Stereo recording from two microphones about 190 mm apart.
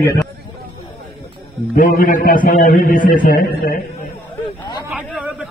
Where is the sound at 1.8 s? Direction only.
45° left (ahead or behind).